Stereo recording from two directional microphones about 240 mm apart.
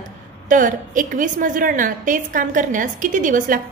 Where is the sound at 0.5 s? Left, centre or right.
Right.